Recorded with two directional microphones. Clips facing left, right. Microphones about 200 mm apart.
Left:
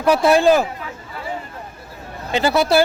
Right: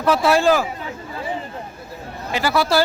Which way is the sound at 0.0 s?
15° left (ahead or behind).